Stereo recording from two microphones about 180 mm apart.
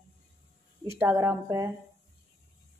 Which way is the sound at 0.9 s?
15° right (ahead or behind).